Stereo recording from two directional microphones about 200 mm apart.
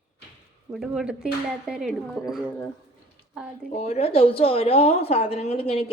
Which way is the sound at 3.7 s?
35° left (ahead or behind).